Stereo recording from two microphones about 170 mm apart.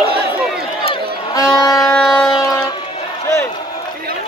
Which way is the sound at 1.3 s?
20° left (ahead or behind).